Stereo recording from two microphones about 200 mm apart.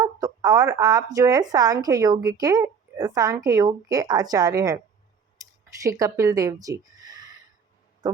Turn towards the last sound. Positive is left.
turn(degrees=-20)  # may be behind; listen again after turning